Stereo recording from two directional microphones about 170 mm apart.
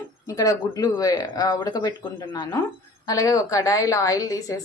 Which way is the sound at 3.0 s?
20° left (ahead or behind).